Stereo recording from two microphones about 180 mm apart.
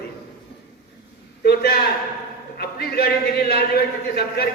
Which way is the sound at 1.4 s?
60° left (ahead or behind).